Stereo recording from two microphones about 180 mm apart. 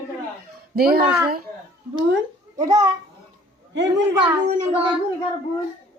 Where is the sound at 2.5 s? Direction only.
20° right (ahead or behind).